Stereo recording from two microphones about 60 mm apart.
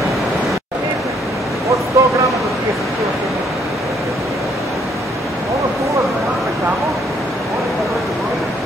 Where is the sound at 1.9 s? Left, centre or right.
Right.